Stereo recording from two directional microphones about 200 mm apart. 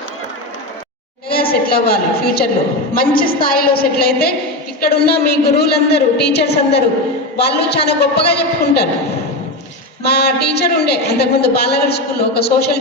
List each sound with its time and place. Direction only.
1.3 s a woman's voice: 50° left (ahead or behind)
10.1 s a woman's voice: 55° left (ahead or behind)